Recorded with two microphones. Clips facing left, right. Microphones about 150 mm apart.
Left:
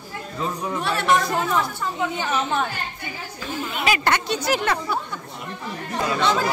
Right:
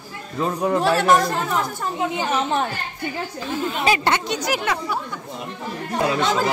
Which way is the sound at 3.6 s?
30° right (ahead or behind).